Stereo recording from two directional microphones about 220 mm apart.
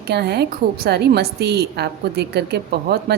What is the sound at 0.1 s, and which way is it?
A woman's voice, 50° right (ahead or behind).